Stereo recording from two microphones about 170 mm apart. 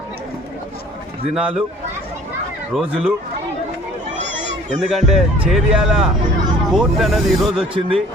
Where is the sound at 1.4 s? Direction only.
5° right (ahead or behind).